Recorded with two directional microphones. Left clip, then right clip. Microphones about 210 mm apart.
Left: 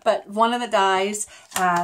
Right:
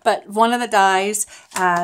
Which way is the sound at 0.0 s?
50° right (ahead or behind).